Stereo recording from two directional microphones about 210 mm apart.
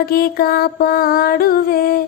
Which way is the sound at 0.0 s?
45° left (ahead or behind).